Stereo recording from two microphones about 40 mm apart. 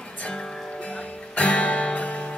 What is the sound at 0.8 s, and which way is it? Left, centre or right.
Music, left.